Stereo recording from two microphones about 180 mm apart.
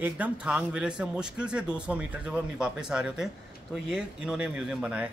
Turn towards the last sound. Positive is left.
turn(degrees=-5)  # may be behind; listen again after turning